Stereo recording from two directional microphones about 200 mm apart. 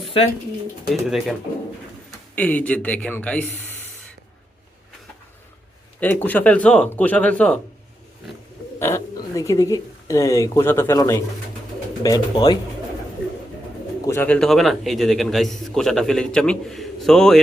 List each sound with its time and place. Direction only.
0.9 s a man's voice: centre (ahead or behind)
6.0 s speech: 10° left (ahead or behind)
8.8 s speech: 15° left (ahead or behind)
14.0 s a man's voice: 10° left (ahead or behind)